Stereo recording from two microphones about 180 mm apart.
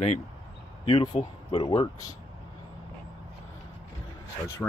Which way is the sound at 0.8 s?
25° left (ahead or behind).